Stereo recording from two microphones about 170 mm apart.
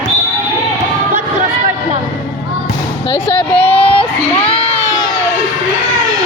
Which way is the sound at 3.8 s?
30° left (ahead or behind).